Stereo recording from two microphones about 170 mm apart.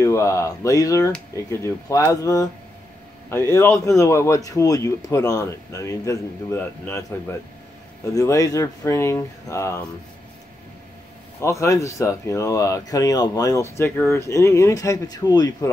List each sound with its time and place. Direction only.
0.0 s speech: 15° left (ahead or behind)
11.4 s speech: 15° left (ahead or behind)